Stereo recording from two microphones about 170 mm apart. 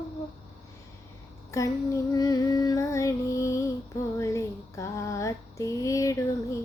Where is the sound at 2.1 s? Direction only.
20° left (ahead or behind).